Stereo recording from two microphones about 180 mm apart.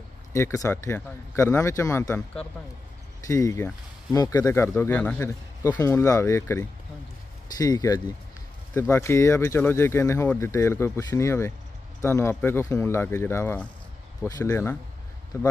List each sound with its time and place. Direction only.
0.3 s speech: 15° left (ahead or behind)